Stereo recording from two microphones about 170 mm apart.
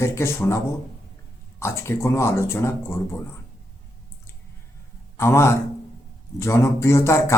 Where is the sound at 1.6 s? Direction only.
15° left (ahead or behind).